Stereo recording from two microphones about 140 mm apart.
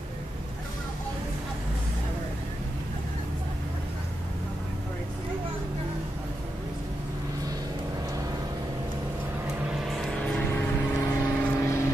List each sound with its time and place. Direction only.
9.7 s vehicle: centre (ahead or behind); by 11.9 s 20° left (ahead or behind)